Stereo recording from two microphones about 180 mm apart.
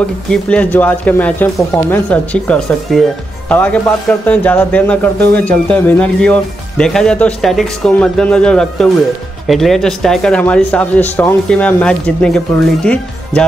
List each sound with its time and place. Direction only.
0.3 s speech: 5° left (ahead or behind)